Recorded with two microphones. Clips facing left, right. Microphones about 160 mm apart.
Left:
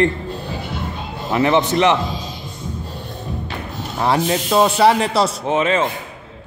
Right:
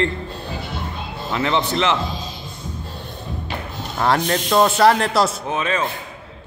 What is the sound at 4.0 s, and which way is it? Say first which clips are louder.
Speech: left 1 dB; 5° left (ahead or behind).